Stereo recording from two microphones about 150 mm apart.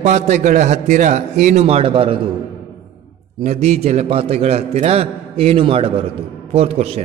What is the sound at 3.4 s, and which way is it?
A man's voice, 45° right (ahead or behind).